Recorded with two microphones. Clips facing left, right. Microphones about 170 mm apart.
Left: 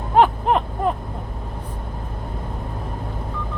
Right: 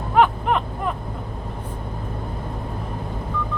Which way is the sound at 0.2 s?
35° left (ahead or behind).